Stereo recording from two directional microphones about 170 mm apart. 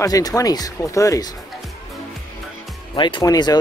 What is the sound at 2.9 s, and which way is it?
Speech, 30° left (ahead or behind).